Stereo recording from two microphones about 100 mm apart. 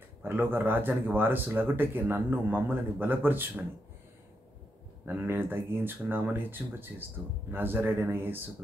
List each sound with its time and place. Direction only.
0.2 s speech: 20° right (ahead or behind)
5.0 s speech: 20° right (ahead or behind)